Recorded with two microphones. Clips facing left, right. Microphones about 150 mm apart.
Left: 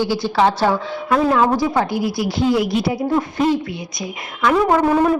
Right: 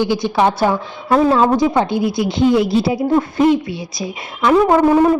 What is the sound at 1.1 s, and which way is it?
Speech, 30° right (ahead or behind).